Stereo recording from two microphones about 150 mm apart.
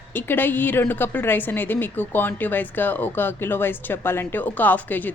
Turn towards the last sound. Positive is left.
turn(degrees=10)  # may be behind; listen again after turning